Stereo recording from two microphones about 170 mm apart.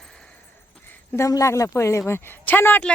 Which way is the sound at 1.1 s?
20° left (ahead or behind).